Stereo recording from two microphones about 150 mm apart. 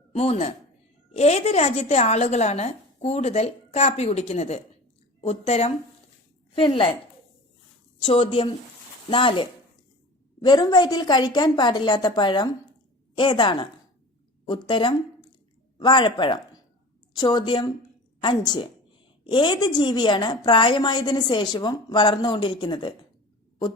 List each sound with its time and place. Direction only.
0.1 s a woman's voice: 45° left (ahead or behind)
6.6 s a woman's voice: 35° left (ahead or behind)
8.0 s a woman's voice: 35° left (ahead or behind)